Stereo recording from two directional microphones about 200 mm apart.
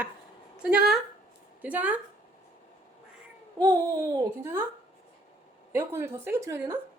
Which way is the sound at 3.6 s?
15° right (ahead or behind).